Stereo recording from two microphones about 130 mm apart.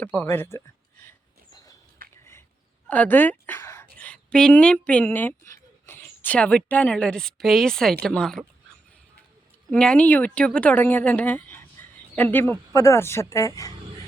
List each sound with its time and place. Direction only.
0.0 s speech: 15° left (ahead or behind)
2.0 s a sound: 90° right
2.9 s a woman's voice: 15° left (ahead or behind)
9.7 s speech: 10° left (ahead or behind); by 13.7 s 25° left (ahead or behind)